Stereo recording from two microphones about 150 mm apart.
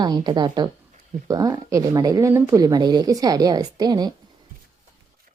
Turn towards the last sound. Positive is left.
turn(degrees=-25)  # may be behind; listen again after turning